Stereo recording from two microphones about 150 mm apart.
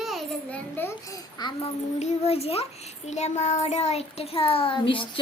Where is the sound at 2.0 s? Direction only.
40° left (ahead or behind).